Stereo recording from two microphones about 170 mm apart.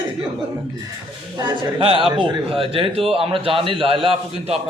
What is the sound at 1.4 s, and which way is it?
A man's voice, 30° right (ahead or behind).